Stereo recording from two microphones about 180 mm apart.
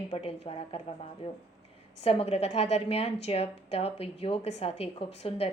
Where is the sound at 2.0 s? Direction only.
35° left (ahead or behind).